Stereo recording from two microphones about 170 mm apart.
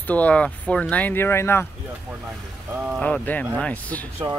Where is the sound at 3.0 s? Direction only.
10° left (ahead or behind).